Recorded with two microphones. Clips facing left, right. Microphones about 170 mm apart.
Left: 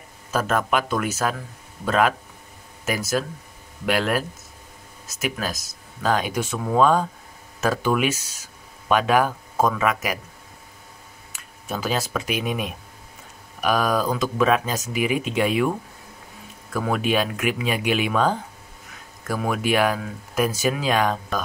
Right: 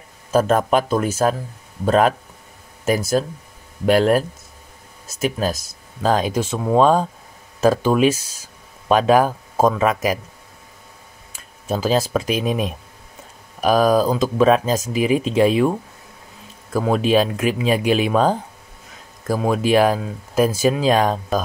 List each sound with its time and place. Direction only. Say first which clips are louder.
0.3 s speech: right 6 dB; 35° right (ahead or behind)
3.8 s speech: right 7 dB; 40° right (ahead or behind)
11.3 s speech: right 6 dB; 30° right (ahead or behind)
16.7 s speech: right 6 dB; 30° right (ahead or behind)